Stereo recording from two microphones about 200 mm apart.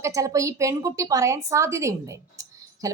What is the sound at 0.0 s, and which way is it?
A woman's voice, 15° right (ahead or behind).